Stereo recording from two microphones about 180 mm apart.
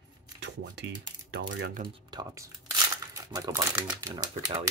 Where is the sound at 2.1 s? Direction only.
15° right (ahead or behind).